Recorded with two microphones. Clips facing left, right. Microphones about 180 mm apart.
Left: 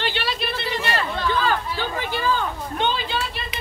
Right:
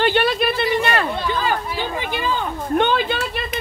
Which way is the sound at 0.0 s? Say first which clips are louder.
Right 9 dB; 50° right (ahead or behind).